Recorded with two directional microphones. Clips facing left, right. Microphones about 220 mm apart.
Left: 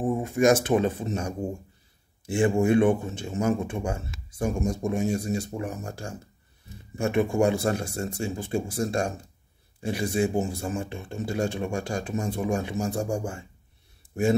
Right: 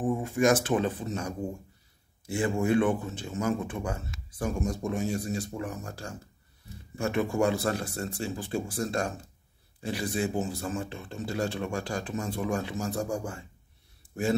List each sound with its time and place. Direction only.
0.1 s a sound: 15° left (ahead or behind)
0.5 s speech: 25° left (ahead or behind)
2.3 s speech: 30° left (ahead or behind)
2.6 s speech: 15° left (ahead or behind)
2.9 s speech: 25° left (ahead or behind)
11.3 s speech: 25° left (ahead or behind)